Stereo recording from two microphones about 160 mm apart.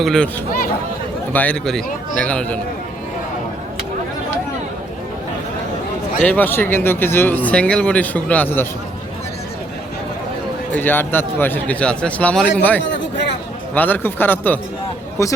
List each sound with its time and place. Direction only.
0.0 s speech: centre (ahead or behind)
1.3 s speech: 10° left (ahead or behind)
6.2 s speech: 10° left (ahead or behind)
10.7 s speech: 10° left (ahead or behind)